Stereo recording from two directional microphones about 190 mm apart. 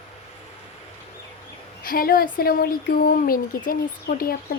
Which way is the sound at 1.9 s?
50° left (ahead or behind).